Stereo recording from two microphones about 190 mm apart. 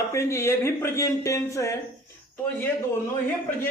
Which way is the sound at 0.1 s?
15° left (ahead or behind).